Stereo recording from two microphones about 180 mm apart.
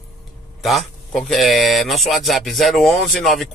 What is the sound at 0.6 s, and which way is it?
Speech, centre (ahead or behind).